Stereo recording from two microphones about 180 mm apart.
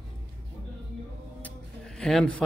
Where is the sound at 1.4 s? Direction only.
5° left (ahead or behind).